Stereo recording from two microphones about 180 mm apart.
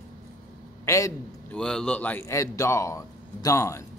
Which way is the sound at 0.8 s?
15° left (ahead or behind).